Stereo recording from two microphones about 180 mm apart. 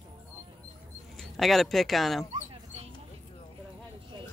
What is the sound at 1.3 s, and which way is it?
Speech, centre (ahead or behind).